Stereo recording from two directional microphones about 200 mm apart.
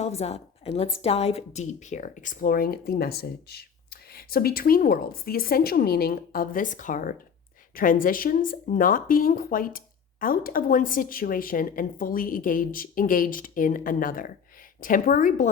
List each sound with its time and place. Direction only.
0.0 s a woman's voice: 30° left (ahead or behind)